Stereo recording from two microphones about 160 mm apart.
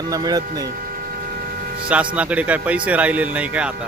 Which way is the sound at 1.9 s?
10° right (ahead or behind).